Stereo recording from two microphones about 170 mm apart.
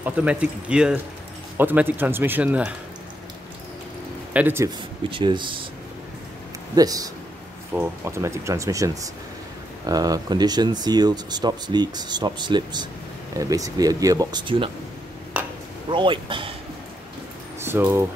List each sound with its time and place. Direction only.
0.0 s speech: 10° right (ahead or behind)
4.3 s a man's voice: 10° right (ahead or behind)
4.6 s speech: 25° right (ahead or behind)
6.7 s speech: 20° right (ahead or behind)
15.3 s a sound: 10° right (ahead or behind)
15.9 s speech: 30° right (ahead or behind)
17.6 s a sound: 15° right (ahead or behind)